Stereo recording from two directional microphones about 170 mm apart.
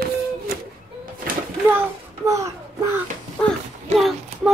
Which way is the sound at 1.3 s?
55° right (ahead or behind).